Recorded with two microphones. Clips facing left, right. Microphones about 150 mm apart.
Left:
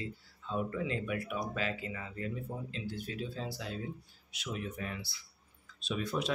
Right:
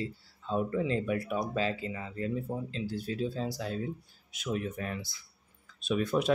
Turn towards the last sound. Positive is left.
turn(degrees=-50)  # may be behind; listen again after turning